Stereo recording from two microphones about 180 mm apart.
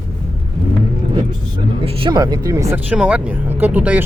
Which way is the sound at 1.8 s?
30° right (ahead or behind).